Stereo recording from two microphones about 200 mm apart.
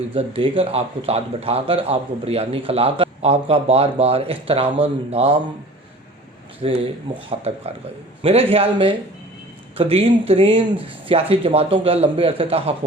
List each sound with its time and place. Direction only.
0.1 s speech: 30° right (ahead or behind)
6.6 s speech: 30° right (ahead or behind)